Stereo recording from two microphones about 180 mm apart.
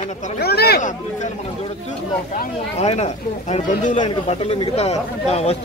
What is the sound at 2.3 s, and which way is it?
Speech, 40° left (ahead or behind).